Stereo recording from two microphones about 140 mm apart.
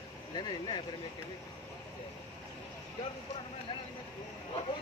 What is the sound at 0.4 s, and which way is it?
Speech, 30° left (ahead or behind).